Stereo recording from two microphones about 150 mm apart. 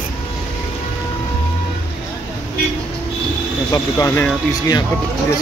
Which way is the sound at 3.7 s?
20° left (ahead or behind).